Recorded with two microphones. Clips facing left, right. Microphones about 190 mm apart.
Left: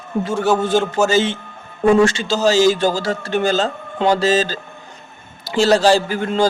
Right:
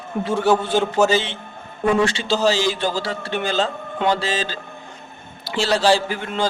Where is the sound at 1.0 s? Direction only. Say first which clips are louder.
Left 3 dB; 45° left (ahead or behind).